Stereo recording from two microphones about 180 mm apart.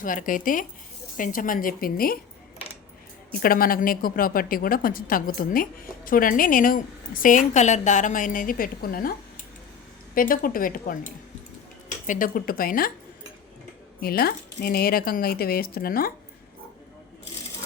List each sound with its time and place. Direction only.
0.0 s a woman's voice: 45° left (ahead or behind)
3.4 s a woman's voice: 55° left (ahead or behind)
10.2 s a woman's voice: 50° left (ahead or behind)
14.0 s speech: 60° left (ahead or behind)